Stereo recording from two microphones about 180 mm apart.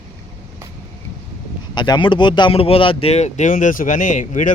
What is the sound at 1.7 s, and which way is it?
Speech, 25° left (ahead or behind).